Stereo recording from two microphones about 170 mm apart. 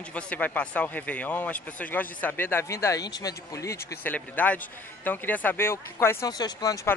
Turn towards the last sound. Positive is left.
turn(degrees=20)  # may be behind; listen again after turning